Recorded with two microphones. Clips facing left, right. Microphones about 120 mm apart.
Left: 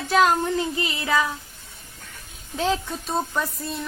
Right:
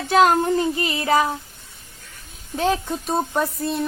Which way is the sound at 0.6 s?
45° right (ahead or behind).